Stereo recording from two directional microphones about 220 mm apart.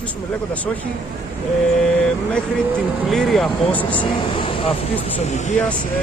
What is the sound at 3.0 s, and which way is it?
Speech, centre (ahead or behind).